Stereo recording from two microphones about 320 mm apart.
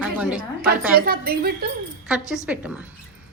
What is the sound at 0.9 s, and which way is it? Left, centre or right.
Speech, right.